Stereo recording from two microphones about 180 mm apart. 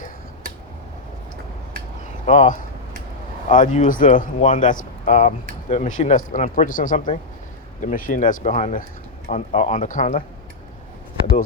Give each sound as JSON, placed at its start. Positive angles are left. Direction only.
{"t": 2.0, "sound": "speech", "side_deg": 45}